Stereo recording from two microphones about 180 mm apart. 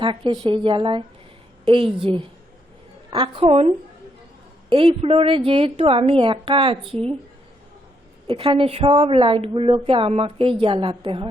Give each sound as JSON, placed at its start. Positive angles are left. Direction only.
{"t": 0.0, "sound": "a woman's voice", "side_deg": -30}
{"t": 4.7, "sound": "a woman's voice", "side_deg": -30}
{"t": 8.3, "sound": "a woman's voice", "side_deg": -30}